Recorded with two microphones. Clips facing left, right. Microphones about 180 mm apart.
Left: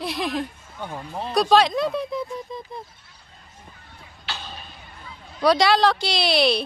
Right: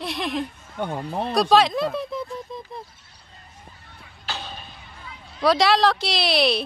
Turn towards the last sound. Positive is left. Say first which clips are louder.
# left 1 dB
turn(degrees=0)  # may be behind; listen again after turning